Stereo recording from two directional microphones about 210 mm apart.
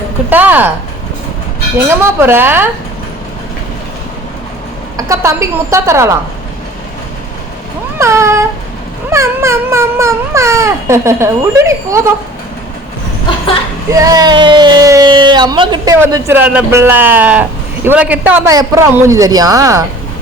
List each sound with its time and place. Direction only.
0.3 s speech: 10° right (ahead or behind)
1.9 s speech: 10° right (ahead or behind)
4.9 s speech: 15° right (ahead or behind)
7.9 s cat: 15° right (ahead or behind)
9.0 s speech: 15° right (ahead or behind)
14.0 s speech: 15° right (ahead or behind)